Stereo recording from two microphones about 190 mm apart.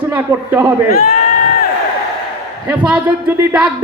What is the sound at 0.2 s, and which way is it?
Speech, 10° right (ahead or behind).